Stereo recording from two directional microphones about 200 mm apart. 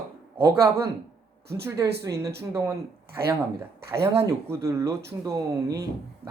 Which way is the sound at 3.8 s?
15° right (ahead or behind).